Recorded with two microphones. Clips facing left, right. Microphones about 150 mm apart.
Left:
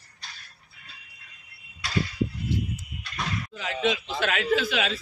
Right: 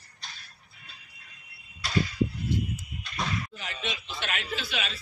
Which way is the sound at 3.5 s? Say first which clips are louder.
Left 10 dB; 90° left.